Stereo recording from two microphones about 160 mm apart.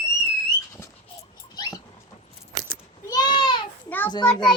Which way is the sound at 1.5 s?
25° left (ahead or behind).